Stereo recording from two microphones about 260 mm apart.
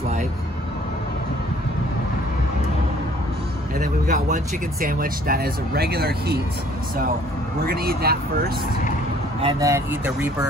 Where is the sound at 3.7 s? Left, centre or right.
Right.